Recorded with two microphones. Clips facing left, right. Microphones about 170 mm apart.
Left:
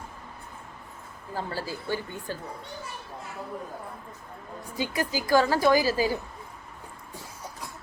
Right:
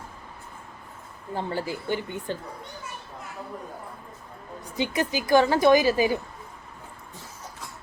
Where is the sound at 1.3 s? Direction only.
20° right (ahead or behind).